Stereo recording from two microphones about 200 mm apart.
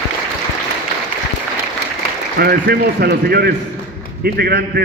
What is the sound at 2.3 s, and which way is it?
A man's voice, 55° right (ahead or behind).